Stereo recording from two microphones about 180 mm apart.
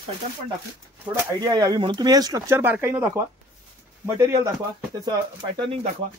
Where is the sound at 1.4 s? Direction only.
20° right (ahead or behind).